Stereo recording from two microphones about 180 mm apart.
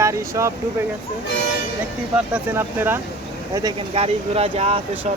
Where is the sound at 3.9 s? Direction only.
35° right (ahead or behind).